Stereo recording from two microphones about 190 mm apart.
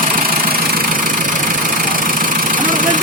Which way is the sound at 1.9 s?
45° right (ahead or behind).